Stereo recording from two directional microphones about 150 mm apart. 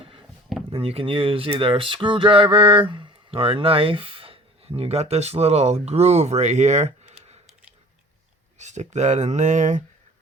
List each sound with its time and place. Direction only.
0.0 s a sound: 35° right (ahead or behind)
0.7 s speech: 40° right (ahead or behind)
8.5 s speech: 50° right (ahead or behind)